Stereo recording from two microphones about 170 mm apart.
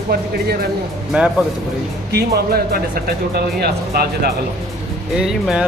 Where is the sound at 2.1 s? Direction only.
70° right (ahead or behind).